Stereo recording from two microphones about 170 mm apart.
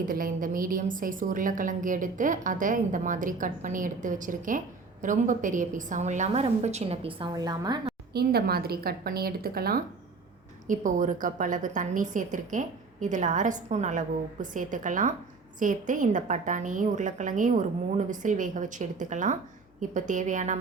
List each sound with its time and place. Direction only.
0.0 s a woman's voice: 55° right (ahead or behind); by 7.8 s 25° right (ahead or behind)
8.1 s a woman's voice: 65° right (ahead or behind)
10.7 s a woman's voice: 50° right (ahead or behind)